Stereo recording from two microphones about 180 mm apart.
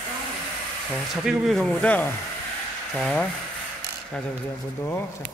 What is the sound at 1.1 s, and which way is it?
Speech, centre (ahead or behind).